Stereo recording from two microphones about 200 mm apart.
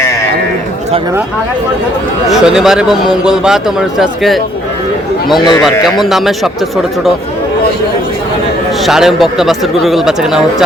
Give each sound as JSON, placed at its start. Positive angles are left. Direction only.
{"t": 2.3, "sound": "a man's voice", "side_deg": -5}
{"t": 5.4, "sound": "speech", "side_deg": 20}
{"t": 5.6, "sound": "a man's voice", "side_deg": 0}
{"t": 8.9, "sound": "a man's voice", "side_deg": 0}